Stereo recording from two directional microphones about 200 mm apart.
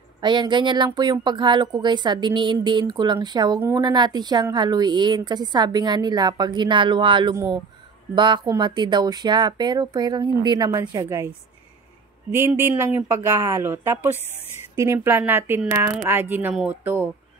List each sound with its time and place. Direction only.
0.2 s a woman's voice: 20° right (ahead or behind)